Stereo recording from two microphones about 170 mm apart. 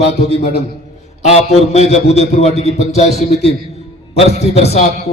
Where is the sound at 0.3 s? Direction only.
35° left (ahead or behind).